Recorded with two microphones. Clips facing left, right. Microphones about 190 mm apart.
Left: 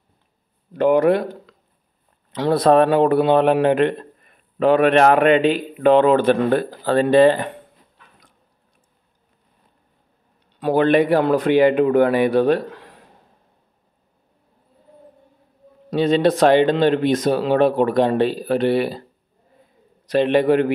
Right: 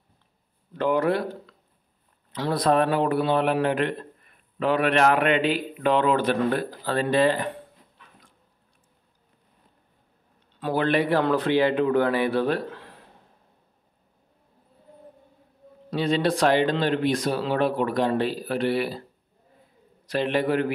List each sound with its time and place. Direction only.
0.9 s a man's voice: 15° left (ahead or behind)
2.8 s speech: 65° left (ahead or behind)
3.3 s speech: 20° left (ahead or behind)
4.6 s a man's voice: 50° left (ahead or behind)
7.1 s speech: 25° left (ahead or behind)
10.6 s a man's voice: 20° left (ahead or behind)
15.9 s speech: 20° left (ahead or behind)
17.3 s speech: 60° left (ahead or behind)
17.6 s speech: 25° left (ahead or behind)
20.1 s speech: 20° left (ahead or behind)